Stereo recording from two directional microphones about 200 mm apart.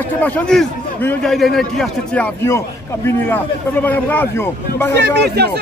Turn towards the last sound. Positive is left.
turn(degrees=-55)  # may be behind; listen again after turning